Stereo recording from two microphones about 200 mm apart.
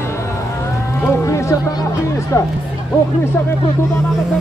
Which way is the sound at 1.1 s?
15° left (ahead or behind).